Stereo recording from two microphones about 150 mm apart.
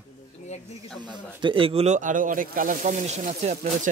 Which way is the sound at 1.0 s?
30° right (ahead or behind).